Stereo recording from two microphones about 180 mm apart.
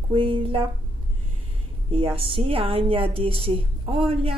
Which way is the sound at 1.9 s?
30° right (ahead or behind).